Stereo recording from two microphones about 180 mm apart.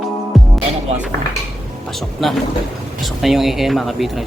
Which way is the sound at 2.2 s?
Centre (ahead or behind).